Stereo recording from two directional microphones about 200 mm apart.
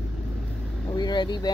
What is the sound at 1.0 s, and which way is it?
Speech, 20° left (ahead or behind).